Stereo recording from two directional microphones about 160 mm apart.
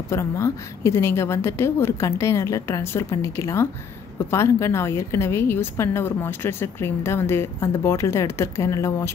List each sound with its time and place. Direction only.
0.1 s a woman's voice: 20° left (ahead or behind)